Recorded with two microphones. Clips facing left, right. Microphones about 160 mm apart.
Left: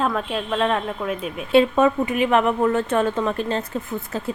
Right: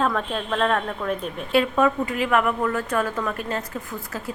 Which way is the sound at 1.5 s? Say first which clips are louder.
Left 4 dB; 25° left (ahead or behind).